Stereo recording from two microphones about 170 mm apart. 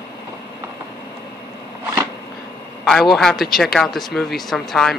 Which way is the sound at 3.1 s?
Centre (ahead or behind).